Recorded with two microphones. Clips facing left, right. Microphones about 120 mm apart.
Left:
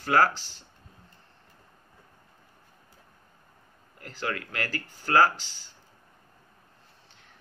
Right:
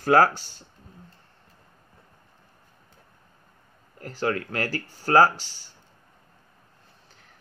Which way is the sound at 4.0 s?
35° right (ahead or behind).